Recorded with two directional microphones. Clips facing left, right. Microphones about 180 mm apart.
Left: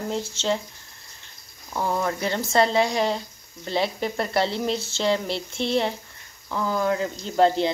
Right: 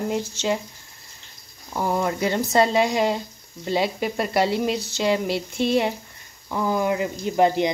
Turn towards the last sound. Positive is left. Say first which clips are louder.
# right 1 dB
turn(degrees=-15)  # may be behind; listen again after turning